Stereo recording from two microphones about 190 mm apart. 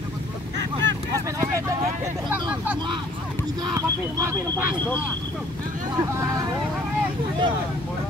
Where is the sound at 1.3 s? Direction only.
15° right (ahead or behind).